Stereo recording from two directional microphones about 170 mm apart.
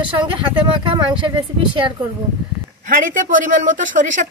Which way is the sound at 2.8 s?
50° right (ahead or behind).